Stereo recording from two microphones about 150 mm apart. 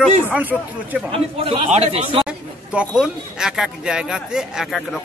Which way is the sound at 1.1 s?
40° right (ahead or behind).